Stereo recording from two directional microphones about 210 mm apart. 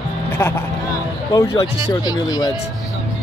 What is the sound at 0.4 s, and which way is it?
Speech, 10° left (ahead or behind).